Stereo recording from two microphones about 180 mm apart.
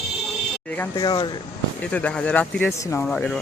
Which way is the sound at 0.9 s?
25° left (ahead or behind).